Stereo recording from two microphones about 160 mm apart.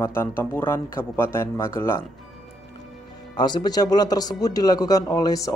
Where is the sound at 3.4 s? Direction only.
25° left (ahead or behind).